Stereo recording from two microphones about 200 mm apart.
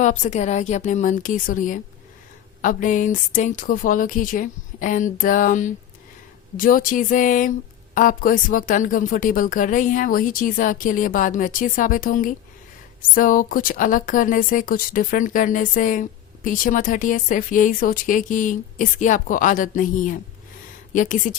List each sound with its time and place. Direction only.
0.0 s a woman's voice: 35° left (ahead or behind)